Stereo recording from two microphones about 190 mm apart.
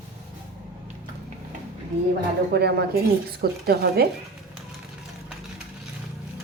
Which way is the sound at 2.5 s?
60° right (ahead or behind).